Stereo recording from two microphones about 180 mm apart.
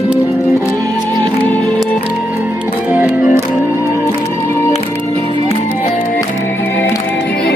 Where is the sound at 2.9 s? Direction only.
5° right (ahead or behind).